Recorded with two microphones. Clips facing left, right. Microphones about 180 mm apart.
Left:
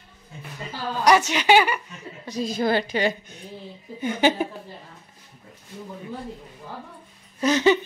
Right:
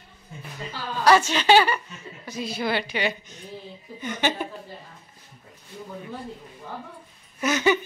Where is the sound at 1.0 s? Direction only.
15° left (ahead or behind).